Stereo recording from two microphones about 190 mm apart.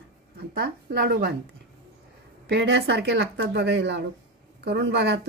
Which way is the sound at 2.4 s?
65° right (ahead or behind).